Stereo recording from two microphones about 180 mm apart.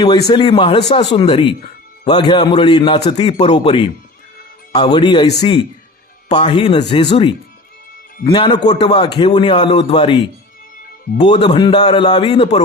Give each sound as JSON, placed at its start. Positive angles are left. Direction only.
{"t": 0.3, "sound": "a man's voice", "side_deg": 25}